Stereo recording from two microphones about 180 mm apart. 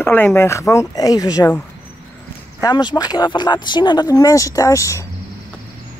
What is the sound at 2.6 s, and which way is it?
Speech, 20° left (ahead or behind).